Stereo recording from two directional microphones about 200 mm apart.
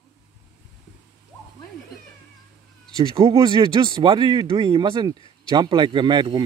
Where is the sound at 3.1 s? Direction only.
30° right (ahead or behind).